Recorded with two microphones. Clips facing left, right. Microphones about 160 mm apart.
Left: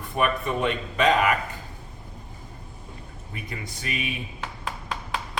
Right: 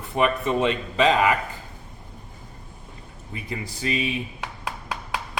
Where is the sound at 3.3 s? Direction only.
25° right (ahead or behind).